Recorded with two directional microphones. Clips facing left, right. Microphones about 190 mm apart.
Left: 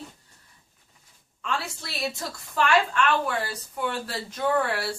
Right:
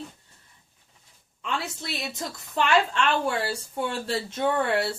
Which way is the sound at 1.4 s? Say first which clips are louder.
Even; 20° right (ahead or behind).